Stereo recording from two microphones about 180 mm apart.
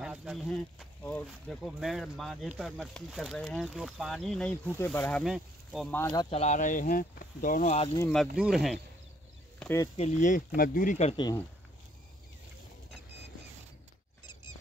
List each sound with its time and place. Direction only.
0.0 s speech: 5° right (ahead or behind)
5.9 s speech: 10° left (ahead or behind)
6.1 s speech: 35° left (ahead or behind)
8.4 s speech: centre (ahead or behind)
9.6 s speech: 15° left (ahead or behind)
9.9 s speech: 40° left (ahead or behind)